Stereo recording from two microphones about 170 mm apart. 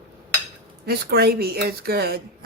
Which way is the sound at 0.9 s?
65° right (ahead or behind).